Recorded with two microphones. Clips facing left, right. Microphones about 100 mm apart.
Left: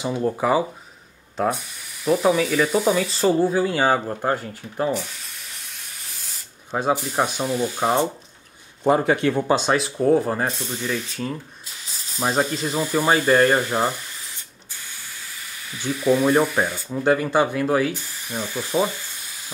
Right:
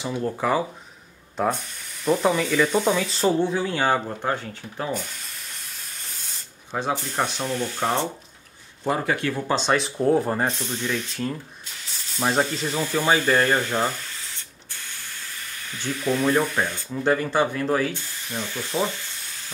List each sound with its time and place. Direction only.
0.0 s speech: 15° left (ahead or behind)
6.0 s spray: centre (ahead or behind)
6.8 s speech: 5° left (ahead or behind)
8.8 s speech: 25° left (ahead or behind)
9.6 s speech: 5° left (ahead or behind)
15.7 s speech: 10° left (ahead or behind)